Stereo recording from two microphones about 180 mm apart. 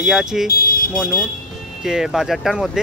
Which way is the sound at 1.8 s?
5° right (ahead or behind).